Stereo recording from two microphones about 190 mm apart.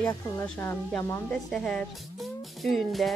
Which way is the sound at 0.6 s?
10° left (ahead or behind).